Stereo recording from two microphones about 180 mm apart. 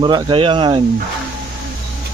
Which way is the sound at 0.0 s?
25° right (ahead or behind).